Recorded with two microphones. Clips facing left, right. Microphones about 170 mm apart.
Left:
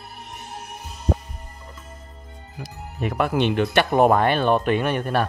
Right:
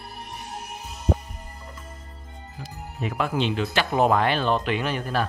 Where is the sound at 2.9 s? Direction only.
55° left (ahead or behind).